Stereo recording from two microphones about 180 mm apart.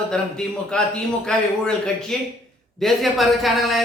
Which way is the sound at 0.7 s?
5° left (ahead or behind).